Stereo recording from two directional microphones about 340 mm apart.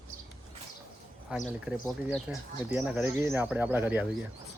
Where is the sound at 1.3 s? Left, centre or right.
Centre.